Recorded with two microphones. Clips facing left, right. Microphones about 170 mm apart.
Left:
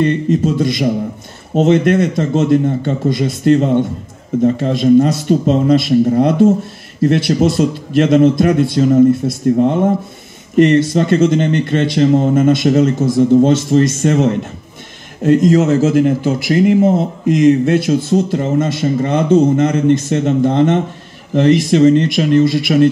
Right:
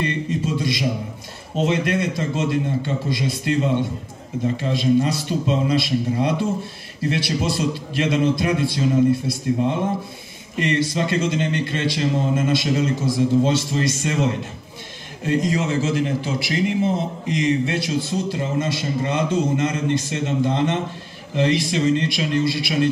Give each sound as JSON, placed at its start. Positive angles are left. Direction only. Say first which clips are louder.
{"t": 0.0, "sound": "speech", "louder": "left 10 dB", "side_deg": 50}